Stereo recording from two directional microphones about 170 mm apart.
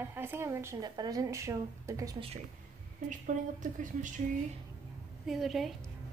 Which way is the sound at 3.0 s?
45° right (ahead or behind).